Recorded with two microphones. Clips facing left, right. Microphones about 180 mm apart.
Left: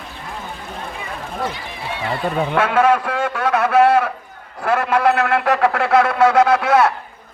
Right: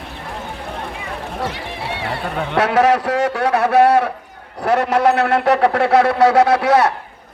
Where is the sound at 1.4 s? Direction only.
70° right (ahead or behind).